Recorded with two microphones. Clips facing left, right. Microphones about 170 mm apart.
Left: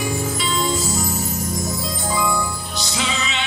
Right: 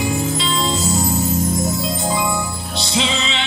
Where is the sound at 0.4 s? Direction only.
25° right (ahead or behind).